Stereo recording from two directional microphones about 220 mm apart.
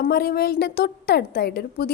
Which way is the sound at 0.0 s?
45° left (ahead or behind).